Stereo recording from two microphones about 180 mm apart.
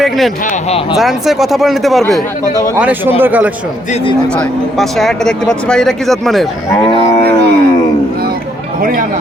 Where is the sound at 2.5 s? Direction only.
15° left (ahead or behind).